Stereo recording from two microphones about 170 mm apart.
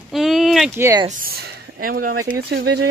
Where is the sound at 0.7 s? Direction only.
15° right (ahead or behind).